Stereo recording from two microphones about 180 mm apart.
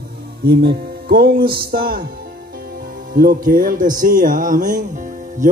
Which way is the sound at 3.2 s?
50° right (ahead or behind).